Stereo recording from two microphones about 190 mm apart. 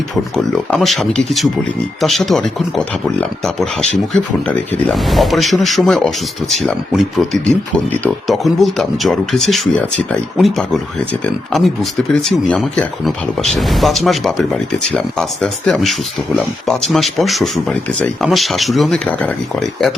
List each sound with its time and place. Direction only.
0.3 s speech: centre (ahead or behind)
8.0 s speech: centre (ahead or behind)